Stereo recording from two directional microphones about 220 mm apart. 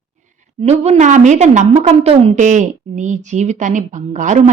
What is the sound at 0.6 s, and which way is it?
A woman's voice, 30° right (ahead or behind).